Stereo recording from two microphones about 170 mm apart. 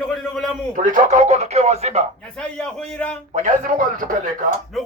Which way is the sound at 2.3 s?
5° left (ahead or behind).